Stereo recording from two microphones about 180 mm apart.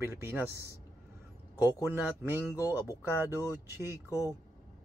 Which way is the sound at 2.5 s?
20° left (ahead or behind).